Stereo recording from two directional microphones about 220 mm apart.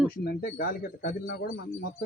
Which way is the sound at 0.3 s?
45° left (ahead or behind).